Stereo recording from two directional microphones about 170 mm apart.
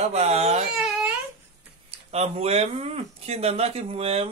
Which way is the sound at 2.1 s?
40° right (ahead or behind).